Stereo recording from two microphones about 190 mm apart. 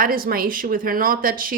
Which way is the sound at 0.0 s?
50° right (ahead or behind).